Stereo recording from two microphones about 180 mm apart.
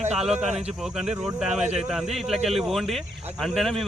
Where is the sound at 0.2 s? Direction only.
5° right (ahead or behind).